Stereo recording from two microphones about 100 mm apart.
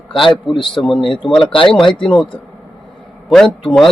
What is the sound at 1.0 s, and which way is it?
Speech, 55° left (ahead or behind).